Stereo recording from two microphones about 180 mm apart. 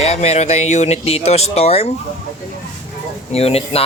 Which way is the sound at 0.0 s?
35° left (ahead or behind).